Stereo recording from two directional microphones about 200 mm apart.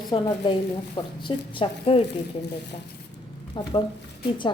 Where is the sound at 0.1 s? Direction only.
25° left (ahead or behind).